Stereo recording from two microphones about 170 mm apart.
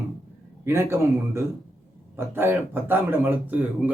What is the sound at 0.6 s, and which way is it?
Speech, 15° right (ahead or behind).